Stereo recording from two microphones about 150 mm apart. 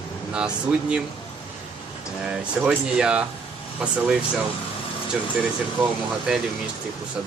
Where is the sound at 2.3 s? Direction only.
5° right (ahead or behind).